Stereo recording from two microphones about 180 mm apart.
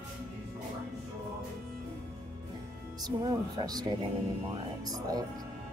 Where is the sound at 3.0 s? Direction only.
20° right (ahead or behind).